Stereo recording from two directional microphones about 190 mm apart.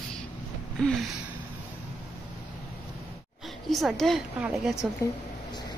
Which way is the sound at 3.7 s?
Centre (ahead or behind).